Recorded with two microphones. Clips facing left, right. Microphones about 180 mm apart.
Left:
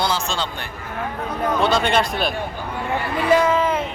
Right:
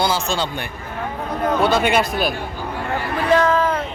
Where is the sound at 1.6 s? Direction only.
10° right (ahead or behind).